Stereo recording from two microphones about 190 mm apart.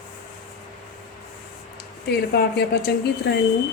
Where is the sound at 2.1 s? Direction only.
60° left (ahead or behind).